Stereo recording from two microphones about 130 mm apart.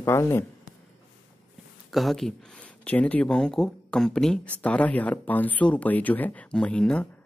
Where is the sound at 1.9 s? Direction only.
Centre (ahead or behind).